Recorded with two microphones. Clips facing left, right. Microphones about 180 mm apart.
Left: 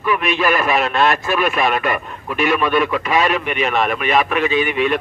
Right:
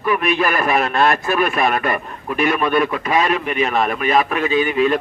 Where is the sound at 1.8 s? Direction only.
40° right (ahead or behind).